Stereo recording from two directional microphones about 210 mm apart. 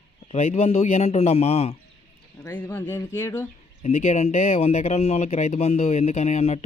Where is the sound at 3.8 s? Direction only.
30° left (ahead or behind).